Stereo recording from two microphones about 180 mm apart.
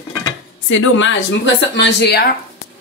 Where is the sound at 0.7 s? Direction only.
90° left; by 2.2 s 65° left (ahead or behind).